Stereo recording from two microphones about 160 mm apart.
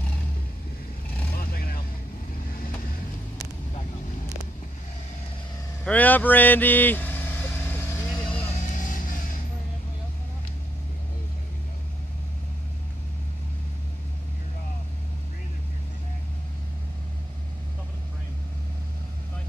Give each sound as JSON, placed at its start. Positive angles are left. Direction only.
{"t": 1.3, "sound": "vehicle", "side_deg": 65}
{"t": 5.9, "sound": "vehicle", "side_deg": 10}
{"t": 8.4, "sound": "vehicle", "side_deg": 50}